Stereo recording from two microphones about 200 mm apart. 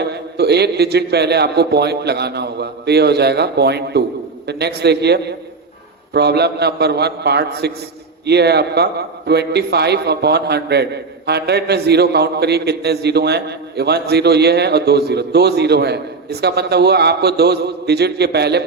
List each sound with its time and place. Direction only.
0.1 s a man's voice: 55° right (ahead or behind)